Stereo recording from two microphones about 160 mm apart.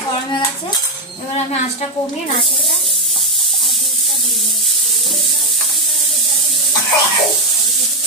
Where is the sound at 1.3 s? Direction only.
45° left (ahead or behind).